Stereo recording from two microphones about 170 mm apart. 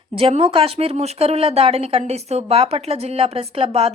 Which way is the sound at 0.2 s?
35° right (ahead or behind).